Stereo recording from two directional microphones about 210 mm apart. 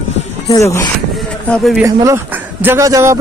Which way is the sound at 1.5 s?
Centre (ahead or behind).